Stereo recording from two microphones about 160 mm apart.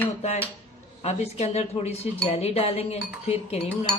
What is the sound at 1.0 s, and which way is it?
Speech, 40° left (ahead or behind).